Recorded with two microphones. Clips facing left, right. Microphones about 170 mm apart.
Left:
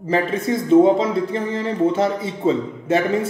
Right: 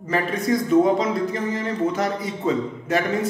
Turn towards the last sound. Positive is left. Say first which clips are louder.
# left 3 dB
turn(degrees=30)  # may be behind; listen again after turning